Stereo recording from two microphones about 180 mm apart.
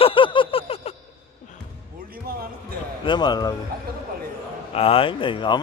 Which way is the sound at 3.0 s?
25° left (ahead or behind).